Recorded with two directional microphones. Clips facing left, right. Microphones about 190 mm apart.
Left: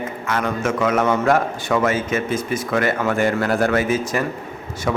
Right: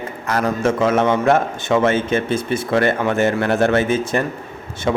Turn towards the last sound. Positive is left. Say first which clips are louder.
# right 2 dB
turn(degrees=-25)  # may be behind; listen again after turning